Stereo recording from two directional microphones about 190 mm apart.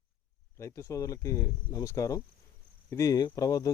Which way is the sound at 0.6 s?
15° left (ahead or behind).